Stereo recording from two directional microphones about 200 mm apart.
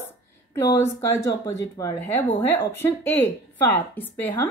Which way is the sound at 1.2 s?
20° left (ahead or behind).